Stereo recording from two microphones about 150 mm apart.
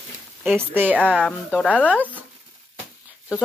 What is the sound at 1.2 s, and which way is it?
Speech, 10° left (ahead or behind).